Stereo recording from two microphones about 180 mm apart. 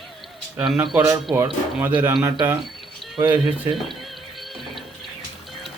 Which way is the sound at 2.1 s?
25° right (ahead or behind).